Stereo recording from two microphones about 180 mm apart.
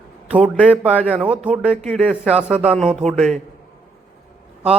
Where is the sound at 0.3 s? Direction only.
5° right (ahead or behind).